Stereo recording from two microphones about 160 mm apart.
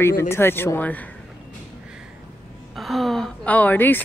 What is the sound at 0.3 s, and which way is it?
Speech, 15° left (ahead or behind).